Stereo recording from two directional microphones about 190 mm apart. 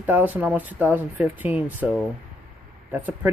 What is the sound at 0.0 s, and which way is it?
Speech, 10° right (ahead or behind).